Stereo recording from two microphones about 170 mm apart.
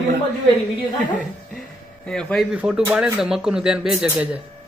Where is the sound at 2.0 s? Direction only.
5° left (ahead or behind).